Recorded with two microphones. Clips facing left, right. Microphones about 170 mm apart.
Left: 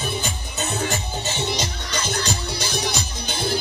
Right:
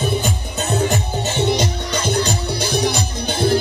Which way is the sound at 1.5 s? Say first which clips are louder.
Right 8 dB; 55° right (ahead or behind).